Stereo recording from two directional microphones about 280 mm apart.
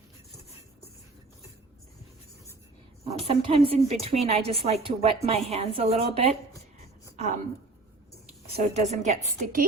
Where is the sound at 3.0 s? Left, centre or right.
Right.